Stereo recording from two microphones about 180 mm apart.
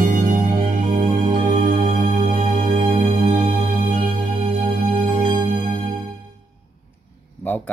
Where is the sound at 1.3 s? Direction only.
50° right (ahead or behind).